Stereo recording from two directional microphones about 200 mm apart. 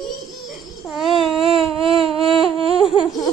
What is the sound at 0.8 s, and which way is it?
Baby cry, centre (ahead or behind).